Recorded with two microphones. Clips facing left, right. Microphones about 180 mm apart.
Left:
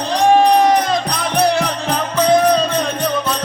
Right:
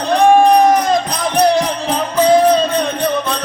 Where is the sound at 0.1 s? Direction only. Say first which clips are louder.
Right 3 dB; 55° right (ahead or behind).